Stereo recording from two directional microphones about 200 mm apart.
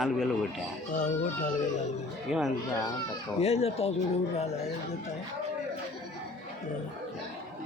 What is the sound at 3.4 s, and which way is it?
Speech, 30° left (ahead or behind).